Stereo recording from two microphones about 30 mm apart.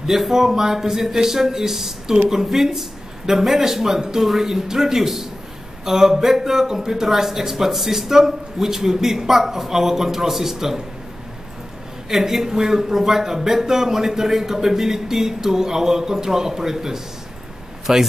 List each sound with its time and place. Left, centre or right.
0.3 s a man's voice: centre
12.1 s a man's voice: centre